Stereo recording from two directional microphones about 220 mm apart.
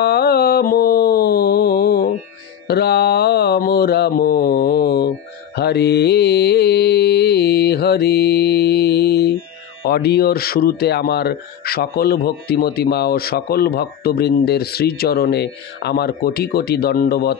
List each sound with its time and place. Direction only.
0.0 s mantra: 45° left (ahead or behind)
9.8 s speech: 45° left (ahead or behind)